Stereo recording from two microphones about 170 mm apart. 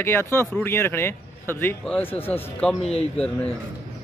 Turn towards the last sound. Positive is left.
turn(degrees=5)  # may be behind; listen again after turning